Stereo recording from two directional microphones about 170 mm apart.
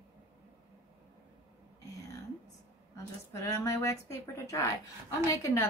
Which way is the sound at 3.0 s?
15° left (ahead or behind).